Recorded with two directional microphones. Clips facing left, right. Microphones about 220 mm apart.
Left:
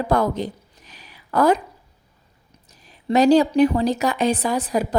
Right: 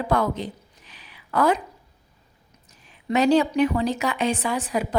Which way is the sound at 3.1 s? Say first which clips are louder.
Left 4 dB; 35° left (ahead or behind).